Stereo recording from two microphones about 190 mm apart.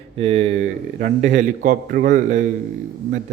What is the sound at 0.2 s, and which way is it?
Speech, 35° right (ahead or behind).